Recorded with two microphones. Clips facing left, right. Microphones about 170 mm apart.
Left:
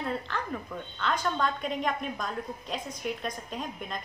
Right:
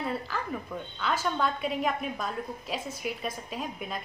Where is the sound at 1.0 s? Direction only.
5° right (ahead or behind).